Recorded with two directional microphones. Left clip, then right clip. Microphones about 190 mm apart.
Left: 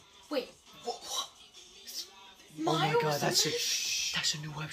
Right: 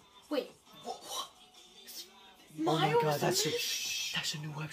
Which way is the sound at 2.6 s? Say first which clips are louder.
Even; 25° right (ahead or behind).